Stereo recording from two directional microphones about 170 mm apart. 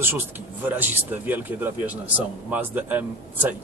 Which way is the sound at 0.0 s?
10° right (ahead or behind).